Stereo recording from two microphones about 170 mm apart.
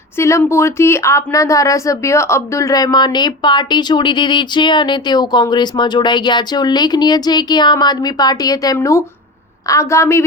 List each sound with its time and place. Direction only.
0.2 s a woman's voice: 15° left (ahead or behind)